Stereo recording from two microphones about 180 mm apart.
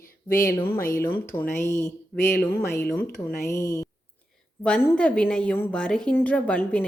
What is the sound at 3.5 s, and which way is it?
A woman's voice, 15° left (ahead or behind).